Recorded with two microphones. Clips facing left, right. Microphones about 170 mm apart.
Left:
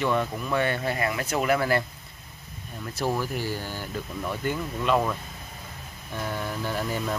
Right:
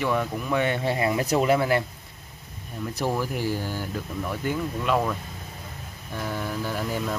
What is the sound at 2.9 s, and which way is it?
Speech, 15° right (ahead or behind).